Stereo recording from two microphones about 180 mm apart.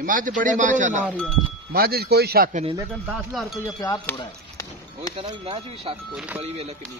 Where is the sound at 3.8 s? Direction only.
20° left (ahead or behind).